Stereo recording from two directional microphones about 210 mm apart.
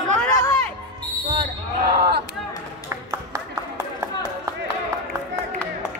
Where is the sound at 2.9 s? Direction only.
10° right (ahead or behind).